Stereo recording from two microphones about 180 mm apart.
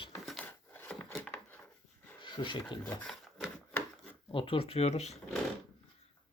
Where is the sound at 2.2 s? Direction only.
25° left (ahead or behind).